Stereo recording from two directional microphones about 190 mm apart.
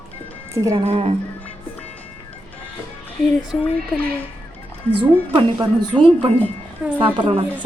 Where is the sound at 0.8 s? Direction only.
30° right (ahead or behind).